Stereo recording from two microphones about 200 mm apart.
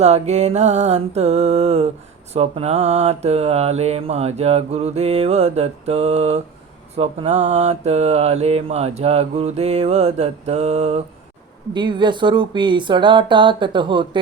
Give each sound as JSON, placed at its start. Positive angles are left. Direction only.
{"t": 0.0, "sound": "mantra", "side_deg": -35}
{"t": 11.7, "sound": "speech", "side_deg": -25}